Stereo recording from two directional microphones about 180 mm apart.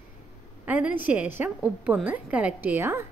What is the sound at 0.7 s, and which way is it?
A woman's voice, 5° right (ahead or behind).